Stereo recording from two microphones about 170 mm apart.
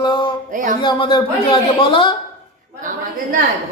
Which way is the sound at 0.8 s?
25° left (ahead or behind).